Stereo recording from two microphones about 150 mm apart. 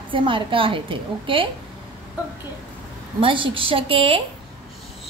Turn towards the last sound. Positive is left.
turn(degrees=-40)  # may be behind; listen again after turning